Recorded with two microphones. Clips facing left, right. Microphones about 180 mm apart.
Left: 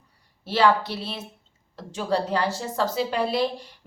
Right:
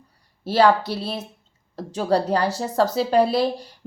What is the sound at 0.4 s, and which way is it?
A woman's voice, 40° right (ahead or behind).